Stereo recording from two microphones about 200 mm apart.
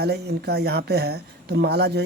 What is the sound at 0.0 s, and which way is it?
Speech, 55° right (ahead or behind).